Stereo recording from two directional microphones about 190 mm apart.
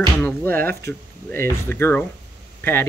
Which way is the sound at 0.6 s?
55° right (ahead or behind).